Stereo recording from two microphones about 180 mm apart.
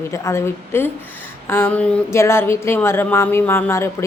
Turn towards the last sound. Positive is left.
turn(degrees=15)  # may be behind; listen again after turning